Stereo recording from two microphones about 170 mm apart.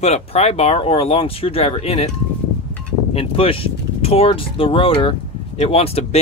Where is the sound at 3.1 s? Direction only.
35° left (ahead or behind).